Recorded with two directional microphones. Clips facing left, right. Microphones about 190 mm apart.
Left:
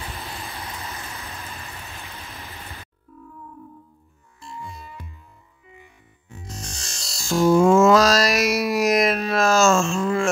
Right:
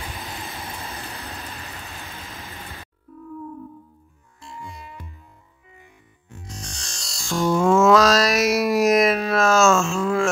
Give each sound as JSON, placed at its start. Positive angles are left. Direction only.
{"t": 6.4, "sound": "music", "side_deg": 5}